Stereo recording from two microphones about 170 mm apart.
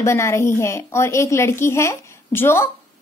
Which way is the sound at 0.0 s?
15° left (ahead or behind).